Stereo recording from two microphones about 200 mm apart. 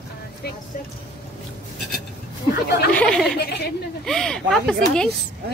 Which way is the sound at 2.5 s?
50° left (ahead or behind).